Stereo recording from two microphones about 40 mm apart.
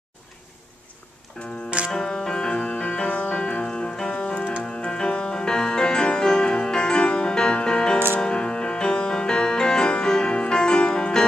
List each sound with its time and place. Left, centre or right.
1.4 s music: centre
4.2 s keyboard: left
4.6 s music: centre